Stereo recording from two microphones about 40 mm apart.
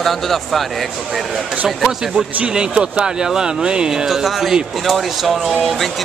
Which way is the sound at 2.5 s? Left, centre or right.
Right.